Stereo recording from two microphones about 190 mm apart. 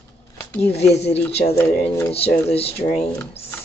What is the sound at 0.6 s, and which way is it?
Speech, 35° left (ahead or behind).